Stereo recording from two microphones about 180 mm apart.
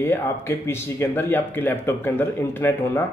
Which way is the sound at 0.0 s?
10° left (ahead or behind).